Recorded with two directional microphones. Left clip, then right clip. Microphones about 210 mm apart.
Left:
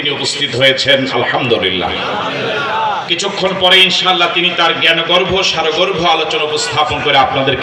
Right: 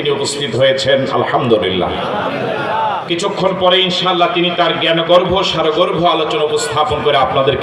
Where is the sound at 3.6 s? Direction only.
55° right (ahead or behind).